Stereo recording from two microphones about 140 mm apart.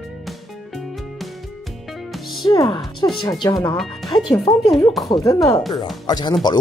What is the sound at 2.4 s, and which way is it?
Speech, 35° left (ahead or behind).